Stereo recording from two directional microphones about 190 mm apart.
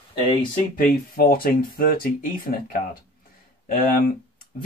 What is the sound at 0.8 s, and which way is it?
Speech, 50° left (ahead or behind).